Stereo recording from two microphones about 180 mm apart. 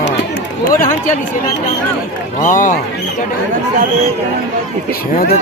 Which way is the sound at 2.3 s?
45° left (ahead or behind).